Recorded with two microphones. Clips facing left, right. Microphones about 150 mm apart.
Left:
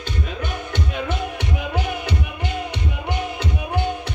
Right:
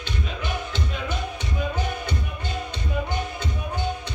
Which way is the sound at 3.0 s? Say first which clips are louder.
Left 4 dB; 80° left.